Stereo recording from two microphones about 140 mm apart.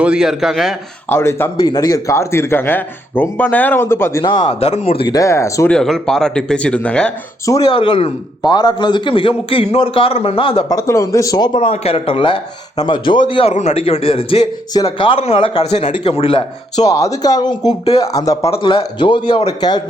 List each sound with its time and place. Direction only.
0.0 s speech: 5° right (ahead or behind)
1.1 s a man's voice: 20° left (ahead or behind)
4.2 s a man's voice: 30° left (ahead or behind)
5.1 s speech: 20° left (ahead or behind)
5.7 s speech: 5° left (ahead or behind)
7.6 s a man's voice: 40° left (ahead or behind)
10.7 s speech: 25° left (ahead or behind)
11.7 s a man's voice: 45° left (ahead or behind)
13.5 s a man's voice: 50° left (ahead or behind)
16.8 s speech: 25° left (ahead or behind)
17.7 s a man's voice: 45° left (ahead or behind)
18.0 s speech: 25° left (ahead or behind)
18.5 s a man's voice: 35° left (ahead or behind)